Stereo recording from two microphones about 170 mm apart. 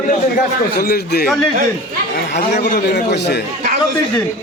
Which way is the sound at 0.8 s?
65° left (ahead or behind).